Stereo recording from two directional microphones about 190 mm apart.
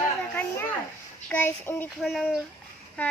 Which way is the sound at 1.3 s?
10° left (ahead or behind).